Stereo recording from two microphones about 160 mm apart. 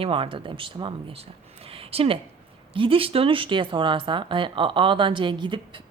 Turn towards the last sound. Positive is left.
turn(degrees=-30)  # may be behind; listen again after turning